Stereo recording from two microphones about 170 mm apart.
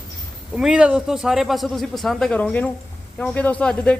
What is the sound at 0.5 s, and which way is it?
A man's voice, 5° right (ahead or behind).